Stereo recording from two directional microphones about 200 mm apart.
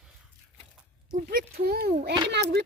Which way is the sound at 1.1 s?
45° right (ahead or behind).